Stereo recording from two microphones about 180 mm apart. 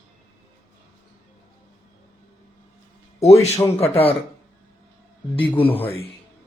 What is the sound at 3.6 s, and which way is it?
Speech, 15° left (ahead or behind).